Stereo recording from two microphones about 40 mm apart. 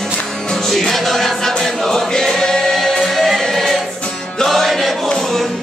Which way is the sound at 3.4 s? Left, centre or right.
Centre.